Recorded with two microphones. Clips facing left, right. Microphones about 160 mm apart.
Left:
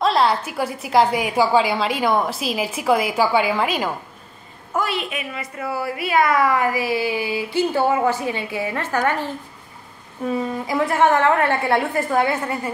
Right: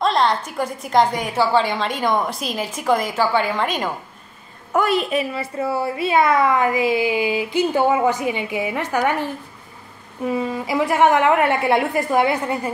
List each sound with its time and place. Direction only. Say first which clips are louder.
0.0 s a sound: left 1 dB; 5° left (ahead or behind)
0.5 s a woman's voice: even; 5° left (ahead or behind)
4.8 s a woman's voice: right 7 dB; 40° right (ahead or behind); by 12.7 s 20° right (ahead or behind)